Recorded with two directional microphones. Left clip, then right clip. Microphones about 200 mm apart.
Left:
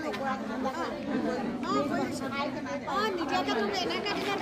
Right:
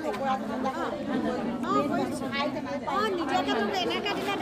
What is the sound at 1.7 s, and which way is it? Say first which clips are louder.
Speech: right 3 dB; 15° right (ahead or behind).